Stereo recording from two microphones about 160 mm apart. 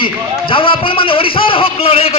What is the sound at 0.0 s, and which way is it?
Speech, 35° left (ahead or behind).